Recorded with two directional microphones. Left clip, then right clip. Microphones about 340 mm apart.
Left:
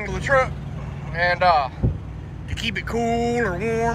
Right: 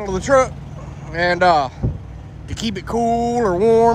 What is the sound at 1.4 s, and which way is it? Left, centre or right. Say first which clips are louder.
Speech: right 4 dB; right.